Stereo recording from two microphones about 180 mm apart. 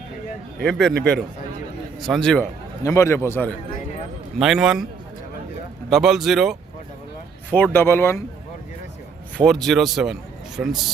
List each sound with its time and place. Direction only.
0.6 s speech: 5° left (ahead or behind)
0.9 s a man's voice: 75° right (ahead or behind)
2.0 s speech: centre (ahead or behind)
2.8 s speech: 15° left (ahead or behind)
4.4 s speech: 5° right (ahead or behind)
5.9 s speech: centre (ahead or behind)
7.5 s speech: 10° left (ahead or behind)
9.4 s speech: centre (ahead or behind)